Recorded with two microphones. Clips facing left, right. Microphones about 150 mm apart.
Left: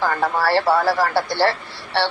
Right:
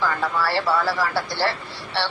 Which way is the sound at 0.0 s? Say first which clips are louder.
Left 3 dB; 50° left (ahead or behind).